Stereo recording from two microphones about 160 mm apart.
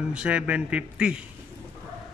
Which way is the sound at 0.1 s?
5° right (ahead or behind).